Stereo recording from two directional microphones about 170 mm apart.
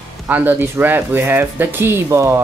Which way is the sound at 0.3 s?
10° right (ahead or behind).